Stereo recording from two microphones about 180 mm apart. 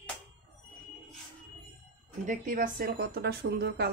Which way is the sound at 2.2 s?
50° right (ahead or behind).